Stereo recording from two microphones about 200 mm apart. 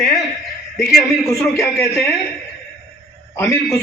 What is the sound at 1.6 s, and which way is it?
Speech, 15° left (ahead or behind).